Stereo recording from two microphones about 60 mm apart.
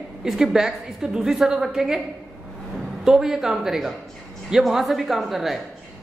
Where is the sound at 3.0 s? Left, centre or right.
Centre.